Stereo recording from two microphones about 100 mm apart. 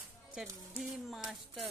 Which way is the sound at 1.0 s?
Centre (ahead or behind).